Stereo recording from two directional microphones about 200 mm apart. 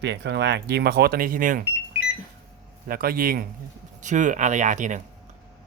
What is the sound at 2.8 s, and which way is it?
A man's voice, 50° right (ahead or behind).